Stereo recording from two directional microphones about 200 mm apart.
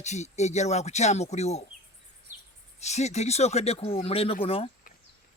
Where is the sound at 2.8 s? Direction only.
35° left (ahead or behind).